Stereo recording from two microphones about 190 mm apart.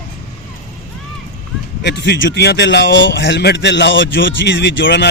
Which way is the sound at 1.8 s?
65° left (ahead or behind).